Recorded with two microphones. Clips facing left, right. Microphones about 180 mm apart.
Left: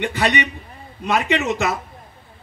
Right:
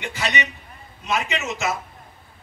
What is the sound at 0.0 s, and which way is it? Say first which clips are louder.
A man's voice: left 6 dB; 55° left (ahead or behind).